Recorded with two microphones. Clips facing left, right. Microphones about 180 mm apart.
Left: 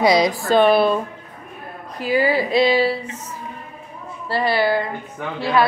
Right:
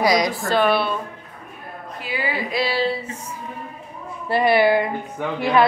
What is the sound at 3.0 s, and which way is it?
Music, 10° right (ahead or behind).